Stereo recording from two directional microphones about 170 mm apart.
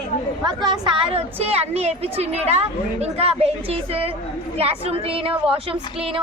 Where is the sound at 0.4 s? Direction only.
25° right (ahead or behind).